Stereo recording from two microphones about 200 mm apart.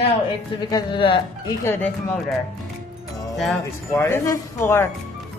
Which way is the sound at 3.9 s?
15° left (ahead or behind).